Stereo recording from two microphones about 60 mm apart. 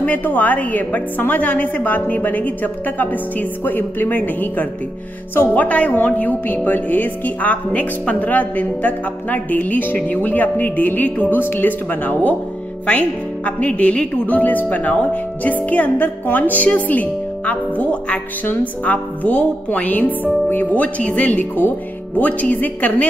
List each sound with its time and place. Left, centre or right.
0.0 s speech: left
13.6 s speech: left